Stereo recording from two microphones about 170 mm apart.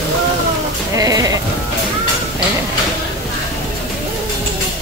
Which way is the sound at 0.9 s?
20° right (ahead or behind).